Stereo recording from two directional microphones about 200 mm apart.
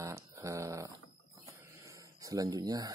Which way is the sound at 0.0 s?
15° right (ahead or behind).